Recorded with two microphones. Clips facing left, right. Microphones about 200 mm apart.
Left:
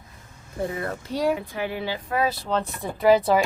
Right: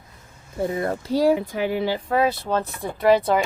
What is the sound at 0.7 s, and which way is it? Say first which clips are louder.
Speech: right 6 dB; 30° right (ahead or behind).